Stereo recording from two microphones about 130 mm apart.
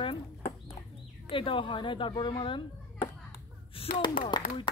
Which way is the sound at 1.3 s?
40° left (ahead or behind).